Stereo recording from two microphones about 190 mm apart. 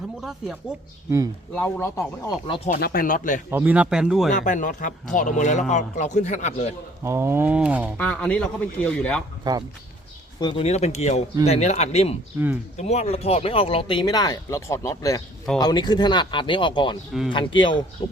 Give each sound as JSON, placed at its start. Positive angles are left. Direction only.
{"t": 0.2, "sound": "speech", "side_deg": 0}
{"t": 1.5, "sound": "speech", "side_deg": 10}
{"t": 2.6, "sound": "speech", "side_deg": 50}
{"t": 3.5, "sound": "speech", "side_deg": -10}
{"t": 4.3, "sound": "speech", "side_deg": 40}
{"t": 7.0, "sound": "speech", "side_deg": -15}
{"t": 7.9, "sound": "speech", "side_deg": 5}
{"t": 9.4, "sound": "speech", "side_deg": -20}
{"t": 10.4, "sound": "speech", "side_deg": 30}
{"t": 12.3, "sound": "speech", "side_deg": -10}
{"t": 12.7, "sound": "speech", "side_deg": 35}